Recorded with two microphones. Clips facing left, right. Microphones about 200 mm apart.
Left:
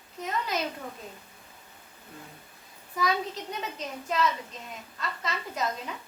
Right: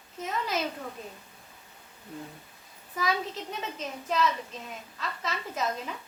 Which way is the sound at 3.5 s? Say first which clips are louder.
Even; centre (ahead or behind).